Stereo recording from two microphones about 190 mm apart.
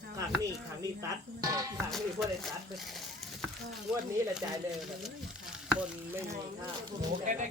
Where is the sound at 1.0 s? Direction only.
20° right (ahead or behind).